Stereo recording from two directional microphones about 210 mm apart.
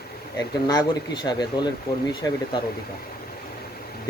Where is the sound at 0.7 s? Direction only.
20° left (ahead or behind).